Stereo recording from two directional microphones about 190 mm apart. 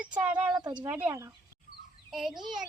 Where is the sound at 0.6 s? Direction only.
25° right (ahead or behind).